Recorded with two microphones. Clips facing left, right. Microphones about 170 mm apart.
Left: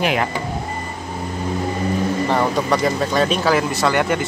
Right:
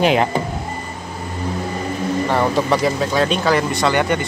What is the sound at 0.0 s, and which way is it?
Speech, 25° right (ahead or behind).